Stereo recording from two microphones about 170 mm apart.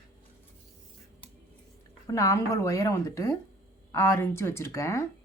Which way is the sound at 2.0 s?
20° left (ahead or behind).